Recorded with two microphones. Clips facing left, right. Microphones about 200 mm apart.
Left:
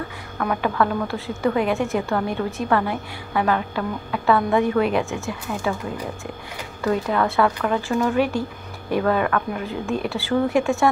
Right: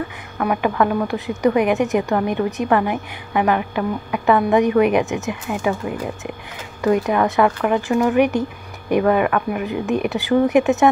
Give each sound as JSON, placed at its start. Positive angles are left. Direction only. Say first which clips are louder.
{"t": 0.4, "sound": "a woman's voice", "louder": "right 3 dB", "side_deg": -15}